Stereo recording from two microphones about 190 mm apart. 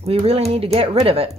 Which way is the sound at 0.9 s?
30° right (ahead or behind).